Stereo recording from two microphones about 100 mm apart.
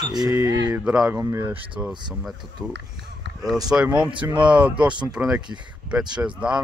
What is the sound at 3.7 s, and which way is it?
Speech, 10° right (ahead or behind).